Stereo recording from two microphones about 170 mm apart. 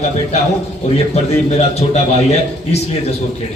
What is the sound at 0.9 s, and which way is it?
A man's voice, 40° left (ahead or behind).